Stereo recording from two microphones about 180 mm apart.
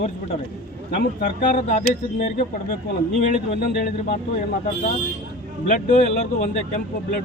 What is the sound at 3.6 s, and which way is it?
Speech, 55° left (ahead or behind).